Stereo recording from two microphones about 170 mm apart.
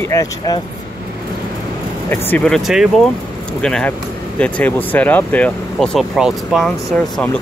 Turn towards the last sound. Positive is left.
turn(degrees=5)  # may be behind; listen again after turning